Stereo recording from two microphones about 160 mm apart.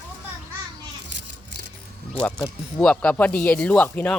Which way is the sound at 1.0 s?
90° right.